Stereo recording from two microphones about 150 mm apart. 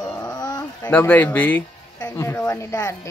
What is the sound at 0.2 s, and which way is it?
Dog, 25° left (ahead or behind).